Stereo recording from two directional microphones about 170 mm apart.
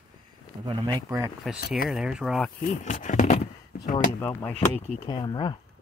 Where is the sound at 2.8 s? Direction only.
50° left (ahead or behind).